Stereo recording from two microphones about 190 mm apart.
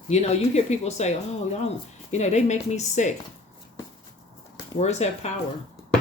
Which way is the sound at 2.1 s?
35° left (ahead or behind).